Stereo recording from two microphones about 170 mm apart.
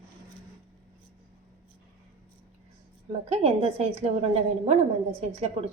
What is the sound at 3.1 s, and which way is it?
A woman's voice, 35° right (ahead or behind).